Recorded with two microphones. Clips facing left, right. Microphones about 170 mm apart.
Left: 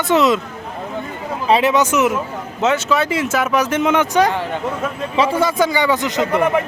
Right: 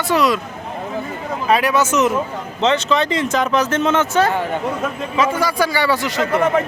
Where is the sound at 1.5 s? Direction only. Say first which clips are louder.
Left 2 dB; 25° left (ahead or behind).